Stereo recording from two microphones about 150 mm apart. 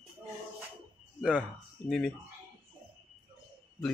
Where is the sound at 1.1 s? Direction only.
5° right (ahead or behind).